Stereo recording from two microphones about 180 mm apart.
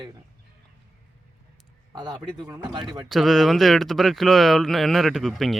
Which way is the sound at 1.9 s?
20° right (ahead or behind).